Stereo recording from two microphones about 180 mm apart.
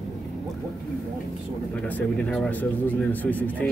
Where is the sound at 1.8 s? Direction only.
10° left (ahead or behind).